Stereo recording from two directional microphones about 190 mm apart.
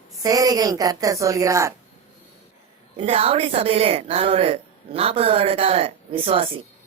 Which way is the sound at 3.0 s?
30° right (ahead or behind).